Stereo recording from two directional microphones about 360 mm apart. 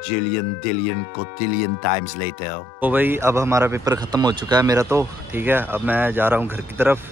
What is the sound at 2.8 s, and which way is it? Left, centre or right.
A man's voice, centre.